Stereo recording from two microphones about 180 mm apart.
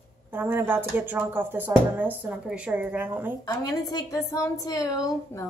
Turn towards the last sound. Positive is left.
turn(degrees=20)  # may be behind; listen again after turning